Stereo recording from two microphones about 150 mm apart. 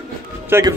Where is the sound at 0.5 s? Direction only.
15° right (ahead or behind).